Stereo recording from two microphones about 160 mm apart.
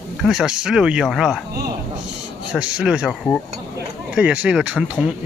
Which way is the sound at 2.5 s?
5° right (ahead or behind).